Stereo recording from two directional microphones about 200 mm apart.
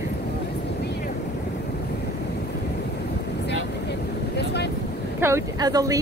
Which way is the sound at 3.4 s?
55° left (ahead or behind).